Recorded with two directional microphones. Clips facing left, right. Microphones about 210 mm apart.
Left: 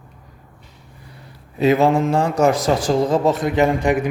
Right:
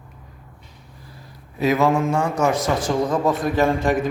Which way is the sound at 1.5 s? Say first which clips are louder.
Left 3 dB; 25° left (ahead or behind).